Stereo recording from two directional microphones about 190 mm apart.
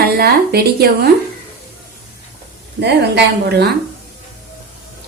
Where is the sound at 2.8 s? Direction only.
60° right (ahead or behind).